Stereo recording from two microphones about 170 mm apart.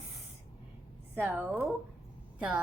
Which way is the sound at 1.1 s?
10° right (ahead or behind).